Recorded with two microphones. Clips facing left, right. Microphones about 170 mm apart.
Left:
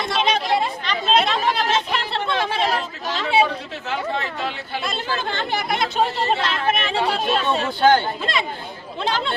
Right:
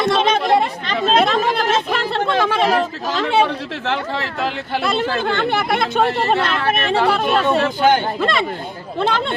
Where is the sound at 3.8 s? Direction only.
85° right; by 7.7 s 60° right (ahead or behind).